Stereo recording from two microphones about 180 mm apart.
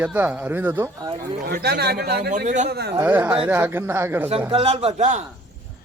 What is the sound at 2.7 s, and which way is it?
Speech, 65° right (ahead or behind).